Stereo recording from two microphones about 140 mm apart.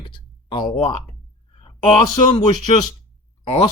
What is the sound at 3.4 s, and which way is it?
Speech, 40° left (ahead or behind).